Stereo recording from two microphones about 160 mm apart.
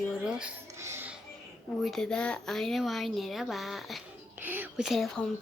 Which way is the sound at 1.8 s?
Centre (ahead or behind).